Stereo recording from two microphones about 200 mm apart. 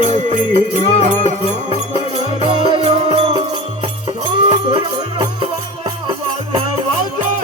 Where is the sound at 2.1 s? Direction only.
25° right (ahead or behind).